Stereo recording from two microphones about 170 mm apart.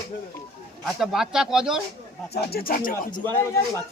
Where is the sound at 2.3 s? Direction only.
65° left (ahead or behind).